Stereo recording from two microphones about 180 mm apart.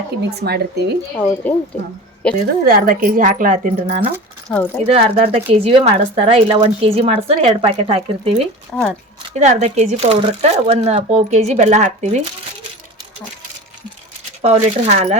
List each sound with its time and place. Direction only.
0.3 s speech: 65° right (ahead or behind)
1.4 s speech: 10° left (ahead or behind)
2.6 s speech: 50° right (ahead or behind)
4.4 s speech: 10° left (ahead or behind)
4.8 s a woman's voice: 30° right (ahead or behind)
8.7 s speech: 5° left (ahead or behind)
9.3 s a woman's voice: 40° right (ahead or behind)
14.4 s a woman's voice: 35° right (ahead or behind)